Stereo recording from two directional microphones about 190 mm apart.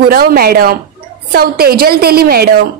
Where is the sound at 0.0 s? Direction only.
50° right (ahead or behind).